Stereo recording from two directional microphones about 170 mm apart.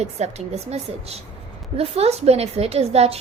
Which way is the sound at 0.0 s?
40° right (ahead or behind).